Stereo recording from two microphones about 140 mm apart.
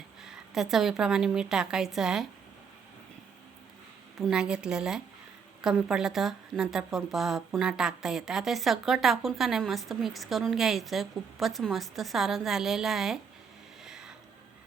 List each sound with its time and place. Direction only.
0.2 s a woman's voice: 5° right (ahead or behind)
4.2 s a woman's voice: 5° right (ahead or behind)
13.8 s a sound: 5° right (ahead or behind)